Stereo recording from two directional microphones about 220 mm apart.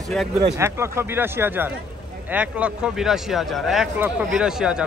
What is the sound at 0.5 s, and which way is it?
A man's voice, 10° right (ahead or behind).